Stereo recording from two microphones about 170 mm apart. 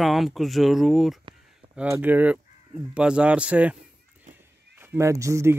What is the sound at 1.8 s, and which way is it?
Speech, 10° right (ahead or behind).